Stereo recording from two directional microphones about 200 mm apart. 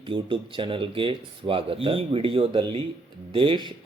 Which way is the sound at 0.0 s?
25° right (ahead or behind).